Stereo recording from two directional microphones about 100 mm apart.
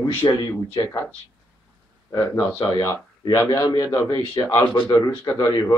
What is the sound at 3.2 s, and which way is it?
Speech, 40° left (ahead or behind).